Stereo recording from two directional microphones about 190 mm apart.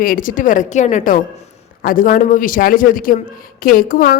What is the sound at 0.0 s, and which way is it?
A woman's voice, 45° left (ahead or behind).